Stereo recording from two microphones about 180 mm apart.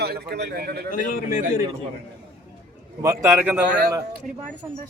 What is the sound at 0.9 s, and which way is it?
Speech, 50° left (ahead or behind).